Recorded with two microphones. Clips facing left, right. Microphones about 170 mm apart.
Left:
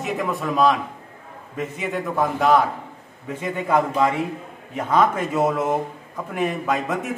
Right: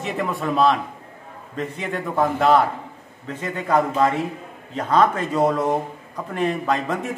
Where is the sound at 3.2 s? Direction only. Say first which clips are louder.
Even; 10° left (ahead or behind).